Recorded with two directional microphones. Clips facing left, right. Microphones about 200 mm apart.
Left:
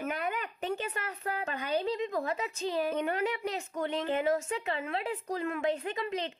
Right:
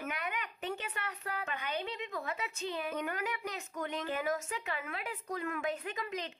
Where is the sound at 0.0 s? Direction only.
35° left (ahead or behind).